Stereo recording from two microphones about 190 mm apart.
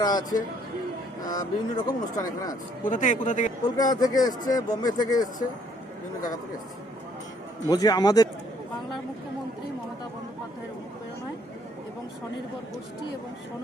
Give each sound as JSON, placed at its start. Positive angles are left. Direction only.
{"t": 0.0, "sound": "speech", "side_deg": 20}
{"t": 2.8, "sound": "speech", "side_deg": 45}
{"t": 3.6, "sound": "speech", "side_deg": 20}
{"t": 7.7, "sound": "speech", "side_deg": 20}